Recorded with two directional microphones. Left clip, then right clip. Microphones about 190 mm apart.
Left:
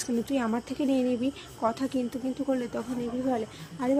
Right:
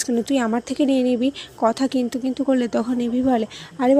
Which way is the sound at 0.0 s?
30° right (ahead or behind).